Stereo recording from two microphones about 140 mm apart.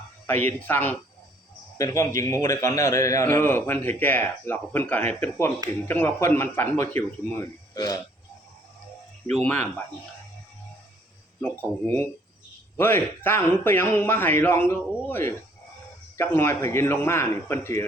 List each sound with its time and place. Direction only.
0.3 s a man's voice: 15° left (ahead or behind)
9.3 s speech: 10° left (ahead or behind)
11.3 s speech: 15° left (ahead or behind)
12.7 s speech: 15° left (ahead or behind)